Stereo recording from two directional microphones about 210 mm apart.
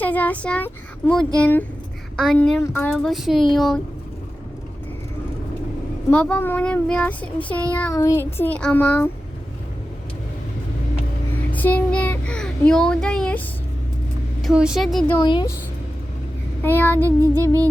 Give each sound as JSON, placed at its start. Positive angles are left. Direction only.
{"t": 0.0, "sound": "child singing", "side_deg": 10}
{"t": 2.2, "sound": "speech", "side_deg": 5}
{"t": 6.1, "sound": "child singing", "side_deg": 5}
{"t": 11.5, "sound": "a child's voice", "side_deg": 5}
{"t": 14.4, "sound": "speech", "side_deg": -5}
{"t": 15.2, "sound": "speech", "side_deg": 20}
{"t": 16.6, "sound": "child singing", "side_deg": 10}
{"t": 17.0, "sound": "music", "side_deg": -15}